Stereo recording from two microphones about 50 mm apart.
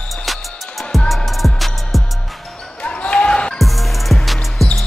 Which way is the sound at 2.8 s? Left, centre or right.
Left.